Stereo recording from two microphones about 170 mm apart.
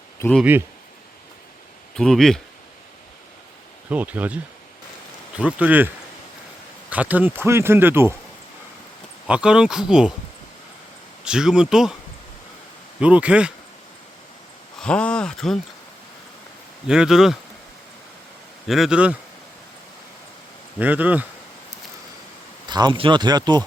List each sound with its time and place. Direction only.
0.2 s speech: 5° left (ahead or behind)
2.0 s speech: 5° left (ahead or behind)
3.8 s speech: 10° right (ahead or behind)
5.4 s speech: 10° right (ahead or behind)
6.9 s speech: 10° right (ahead or behind)
9.2 s speech: 5° right (ahead or behind)
11.3 s speech: 5° right (ahead or behind)
13.0 s speech: 5° right (ahead or behind)
14.8 s speech: 5° left (ahead or behind)
16.8 s speech: 5° right (ahead or behind)
18.7 s speech: 5° right (ahead or behind)
20.7 s speech: 10° right (ahead or behind)
22.6 s speech: 25° right (ahead or behind)